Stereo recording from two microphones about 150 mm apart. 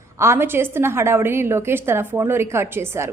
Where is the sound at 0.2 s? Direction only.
15° right (ahead or behind).